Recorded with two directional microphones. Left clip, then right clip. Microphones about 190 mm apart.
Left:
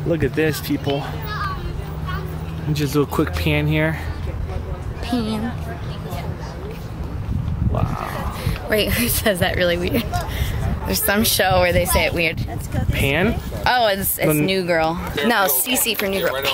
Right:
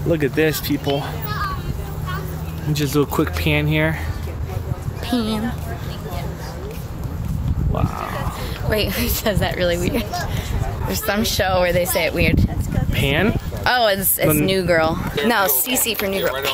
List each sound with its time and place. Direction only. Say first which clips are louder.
0.1 s speech: right 2 dB; 20° right (ahead or behind)
0.9 s speech: right 1 dB; 40° right (ahead or behind)
2.7 s speech: right 1 dB; 10° right (ahead or behind)
5.1 s speech: right 2 dB; 20° right (ahead or behind)
8.6 s speech: left 2 dB; 35° left (ahead or behind)
10.9 s speech: left 2 dB; 60° left (ahead or behind)
11.7 s speech: even; 10° left (ahead or behind); by 15.0 s 10° right (ahead or behind)
15.2 s speech: even; 5° left (ahead or behind)